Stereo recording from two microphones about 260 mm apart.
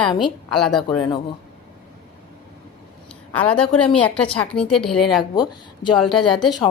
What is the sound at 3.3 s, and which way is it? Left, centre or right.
A woman's voice, centre.